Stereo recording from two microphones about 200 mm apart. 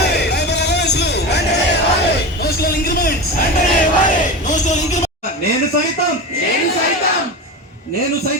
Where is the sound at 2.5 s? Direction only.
50° left (ahead or behind).